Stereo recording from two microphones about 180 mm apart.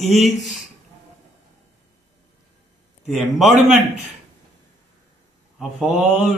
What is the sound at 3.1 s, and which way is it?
Speech, centre (ahead or behind).